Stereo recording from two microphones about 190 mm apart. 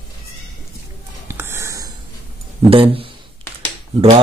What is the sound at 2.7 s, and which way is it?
Speech, 30° right (ahead or behind).